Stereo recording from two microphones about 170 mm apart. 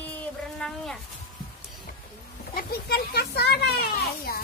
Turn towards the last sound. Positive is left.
turn(degrees=65)  # may be behind; listen again after turning